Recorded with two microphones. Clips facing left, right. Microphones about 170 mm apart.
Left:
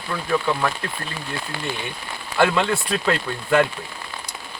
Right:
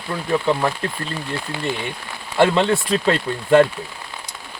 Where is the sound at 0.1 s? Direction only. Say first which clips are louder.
Right 3 dB; 25° right (ahead or behind).